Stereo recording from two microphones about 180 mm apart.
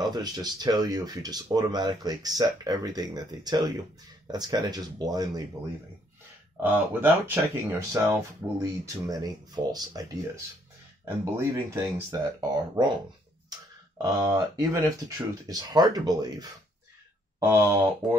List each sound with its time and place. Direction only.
0.0 s speech: 25° right (ahead or behind)
6.5 s speech: 10° right (ahead or behind)
14.0 s speech: 20° right (ahead or behind)